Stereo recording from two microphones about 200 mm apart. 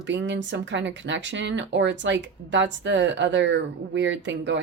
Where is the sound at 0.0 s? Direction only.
65° right (ahead or behind).